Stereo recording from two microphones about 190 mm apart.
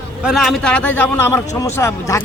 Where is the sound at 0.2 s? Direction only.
Centre (ahead or behind).